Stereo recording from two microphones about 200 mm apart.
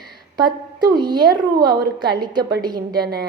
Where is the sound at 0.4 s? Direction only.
20° right (ahead or behind).